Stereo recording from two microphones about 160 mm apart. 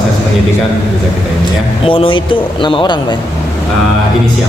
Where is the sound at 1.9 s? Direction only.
35° left (ahead or behind).